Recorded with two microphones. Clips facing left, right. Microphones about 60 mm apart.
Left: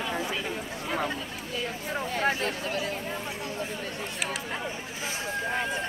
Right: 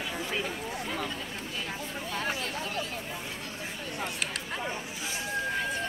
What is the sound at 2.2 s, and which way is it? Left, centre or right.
Speech, left.